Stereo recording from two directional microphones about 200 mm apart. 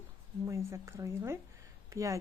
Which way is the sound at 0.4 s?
15° right (ahead or behind).